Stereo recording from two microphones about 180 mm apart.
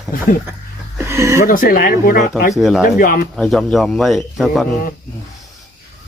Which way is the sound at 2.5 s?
Centre (ahead or behind).